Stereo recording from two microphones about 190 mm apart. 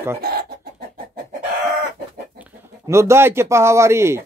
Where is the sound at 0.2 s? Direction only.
55° right (ahead or behind).